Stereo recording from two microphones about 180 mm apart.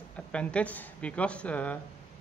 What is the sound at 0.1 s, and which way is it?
Speech, 5° left (ahead or behind).